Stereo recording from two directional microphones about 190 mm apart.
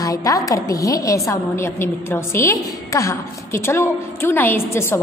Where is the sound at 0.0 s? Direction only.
20° left (ahead or behind).